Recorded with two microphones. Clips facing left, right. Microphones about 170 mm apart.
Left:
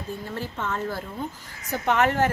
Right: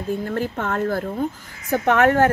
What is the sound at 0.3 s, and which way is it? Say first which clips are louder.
A woman's voice: right 6 dB; 55° right (ahead or behind).